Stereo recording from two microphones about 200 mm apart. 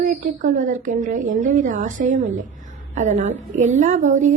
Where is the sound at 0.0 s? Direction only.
40° right (ahead or behind).